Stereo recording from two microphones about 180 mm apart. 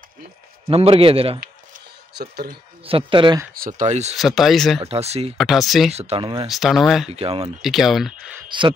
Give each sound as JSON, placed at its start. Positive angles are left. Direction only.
{"t": 0.7, "sound": "speech", "side_deg": -35}
{"t": 2.1, "sound": "speech", "side_deg": -60}
{"t": 2.8, "sound": "speech", "side_deg": -30}
{"t": 3.5, "sound": "speech", "side_deg": -50}
{"t": 4.2, "sound": "speech", "side_deg": 0}
{"t": 4.8, "sound": "speech", "side_deg": -35}
{"t": 5.4, "sound": "speech", "side_deg": 0}
{"t": 5.9, "sound": "speech", "side_deg": -30}
{"t": 6.5, "sound": "speech", "side_deg": 0}
{"t": 7.1, "sound": "speech", "side_deg": -35}
{"t": 7.6, "sound": "speech", "side_deg": 0}
{"t": 8.5, "sound": "speech", "side_deg": -25}